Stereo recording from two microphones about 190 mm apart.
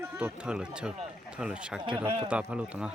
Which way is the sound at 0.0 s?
10° right (ahead or behind).